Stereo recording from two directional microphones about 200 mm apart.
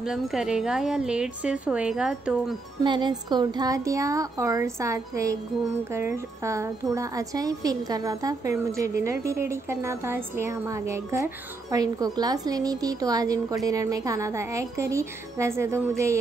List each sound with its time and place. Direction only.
0.0 s a woman's voice: centre (ahead or behind)
2.8 s a woman's voice: 20° right (ahead or behind)